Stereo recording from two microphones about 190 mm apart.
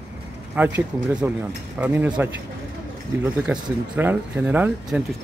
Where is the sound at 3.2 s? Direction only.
10° right (ahead or behind).